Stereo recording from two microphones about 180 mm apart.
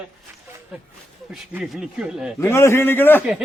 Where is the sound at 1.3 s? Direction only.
Centre (ahead or behind).